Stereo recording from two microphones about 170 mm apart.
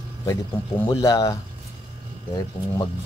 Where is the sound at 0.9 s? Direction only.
20° left (ahead or behind).